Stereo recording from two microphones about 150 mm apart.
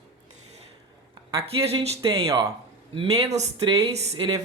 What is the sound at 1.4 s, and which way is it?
Speech, 40° right (ahead or behind).